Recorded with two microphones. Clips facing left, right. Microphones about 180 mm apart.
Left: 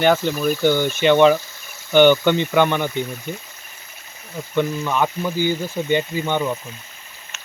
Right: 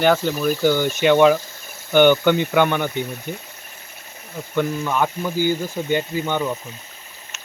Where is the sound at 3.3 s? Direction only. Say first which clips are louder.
Even; 55° right (ahead or behind).